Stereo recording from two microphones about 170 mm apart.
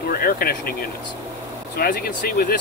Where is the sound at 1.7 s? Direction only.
60° left (ahead or behind).